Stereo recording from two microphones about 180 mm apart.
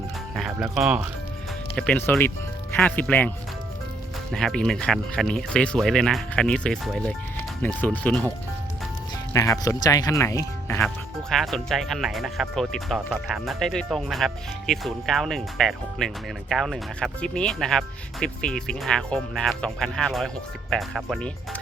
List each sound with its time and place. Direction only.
0.3 s speech: centre (ahead or behind)
1.7 s speech: 10° left (ahead or behind)
9.3 s speech: 15° left (ahead or behind)
10.8 s speech: centre (ahead or behind)